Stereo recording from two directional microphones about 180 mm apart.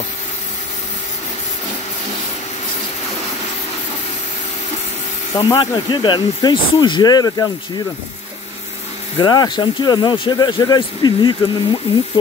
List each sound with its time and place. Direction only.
5.3 s speech: 20° left (ahead or behind)
9.2 s speech: 25° left (ahead or behind)